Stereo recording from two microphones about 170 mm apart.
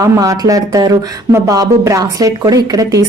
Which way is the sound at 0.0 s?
20° right (ahead or behind).